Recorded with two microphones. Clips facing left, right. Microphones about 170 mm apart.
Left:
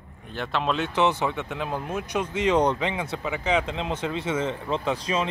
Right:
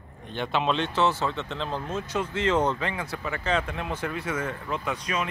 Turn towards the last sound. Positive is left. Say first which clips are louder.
# left 4 dB
turn(degrees=30)  # may be behind; listen again after turning